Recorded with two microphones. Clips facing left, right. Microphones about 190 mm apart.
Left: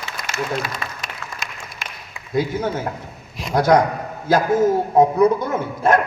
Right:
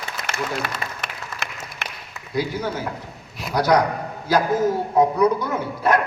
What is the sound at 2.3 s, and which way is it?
Speech, 50° left (ahead or behind).